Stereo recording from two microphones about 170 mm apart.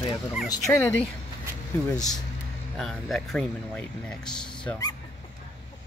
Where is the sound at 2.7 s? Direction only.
Centre (ahead or behind).